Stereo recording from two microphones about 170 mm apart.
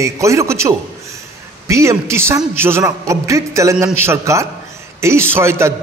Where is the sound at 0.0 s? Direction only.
20° right (ahead or behind).